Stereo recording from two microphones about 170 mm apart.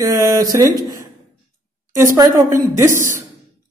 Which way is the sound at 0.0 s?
20° right (ahead or behind).